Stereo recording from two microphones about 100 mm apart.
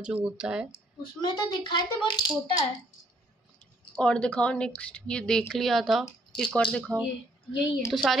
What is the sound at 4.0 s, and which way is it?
A woman's voice, 10° left (ahead or behind).